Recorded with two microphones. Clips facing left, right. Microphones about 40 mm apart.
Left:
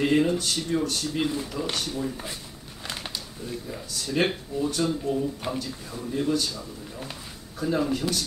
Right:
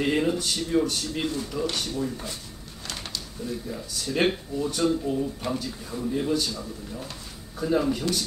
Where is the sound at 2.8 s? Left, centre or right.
Centre.